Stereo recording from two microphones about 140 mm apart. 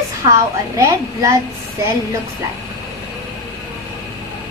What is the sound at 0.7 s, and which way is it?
Speech, 20° right (ahead or behind).